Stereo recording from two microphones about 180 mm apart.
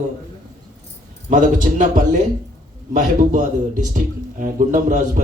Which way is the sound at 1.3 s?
45° right (ahead or behind).